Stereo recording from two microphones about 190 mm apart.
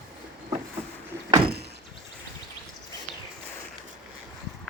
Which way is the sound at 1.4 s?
55° right (ahead or behind).